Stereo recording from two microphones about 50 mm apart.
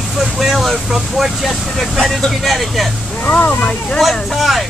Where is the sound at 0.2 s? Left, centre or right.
Centre.